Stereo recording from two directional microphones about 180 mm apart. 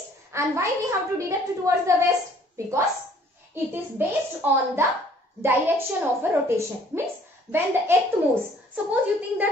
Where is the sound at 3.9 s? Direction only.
10° right (ahead or behind).